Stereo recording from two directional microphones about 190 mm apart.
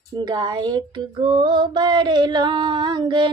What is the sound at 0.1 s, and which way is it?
Female singing, 20° right (ahead or behind).